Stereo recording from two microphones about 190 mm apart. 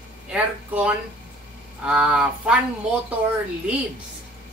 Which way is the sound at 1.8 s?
5° right (ahead or behind).